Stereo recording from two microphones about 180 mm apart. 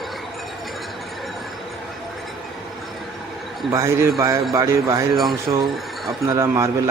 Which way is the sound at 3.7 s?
15° right (ahead or behind).